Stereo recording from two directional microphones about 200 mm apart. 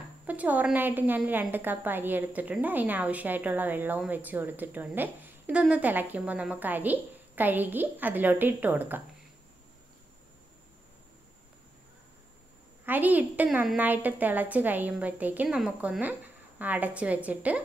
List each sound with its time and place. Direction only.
0.3 s a woman's voice: 10° right (ahead or behind)
12.8 s a woman's voice: 10° right (ahead or behind)